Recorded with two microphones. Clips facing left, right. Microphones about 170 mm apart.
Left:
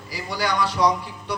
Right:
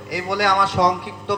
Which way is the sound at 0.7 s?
90° right.